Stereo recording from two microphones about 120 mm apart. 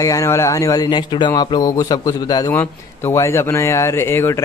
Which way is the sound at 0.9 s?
40° left (ahead or behind).